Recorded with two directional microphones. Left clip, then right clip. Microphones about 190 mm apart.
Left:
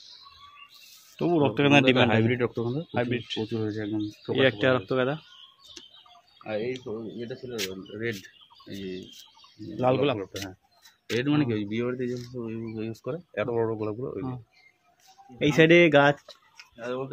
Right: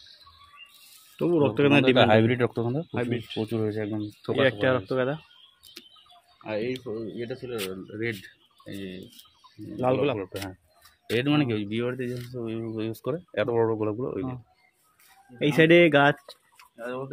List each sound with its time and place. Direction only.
1.1 s speech: 5° left (ahead or behind)
2.0 s a man's voice: 35° right (ahead or behind)
2.9 s speech: 15° left (ahead or behind)
3.3 s speech: 45° right (ahead or behind)
4.4 s speech: 5° left (ahead or behind)
6.4 s speech: 60° right (ahead or behind)
7.2 s a man's voice: 35° right (ahead or behind)
9.8 s speech: 5° left (ahead or behind)
11.1 s speech: 45° right (ahead or behind)
15.3 s speech: 5° right (ahead or behind)